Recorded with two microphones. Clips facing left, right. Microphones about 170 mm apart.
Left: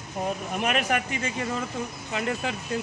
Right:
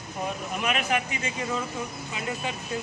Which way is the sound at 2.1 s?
65° left (ahead or behind).